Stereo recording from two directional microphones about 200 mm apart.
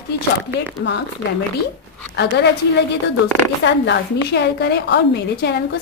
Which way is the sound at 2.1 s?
55° left (ahead or behind).